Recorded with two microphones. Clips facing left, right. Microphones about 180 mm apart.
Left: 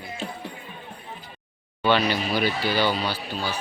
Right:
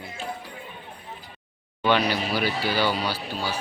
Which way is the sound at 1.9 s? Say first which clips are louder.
Left 1 dB; 10° right (ahead or behind).